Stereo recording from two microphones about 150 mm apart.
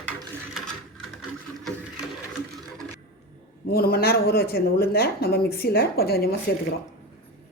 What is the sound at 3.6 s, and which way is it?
Speech, 90° left.